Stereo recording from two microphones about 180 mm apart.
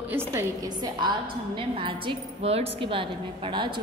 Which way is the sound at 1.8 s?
30° right (ahead or behind).